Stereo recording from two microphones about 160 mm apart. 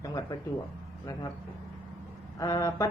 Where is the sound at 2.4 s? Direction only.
25° left (ahead or behind).